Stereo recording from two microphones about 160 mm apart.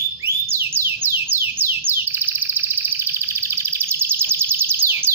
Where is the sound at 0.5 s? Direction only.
15° right (ahead or behind).